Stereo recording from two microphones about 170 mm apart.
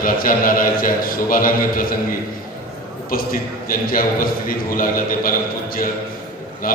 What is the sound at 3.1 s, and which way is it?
A man's voice, 55° left (ahead or behind).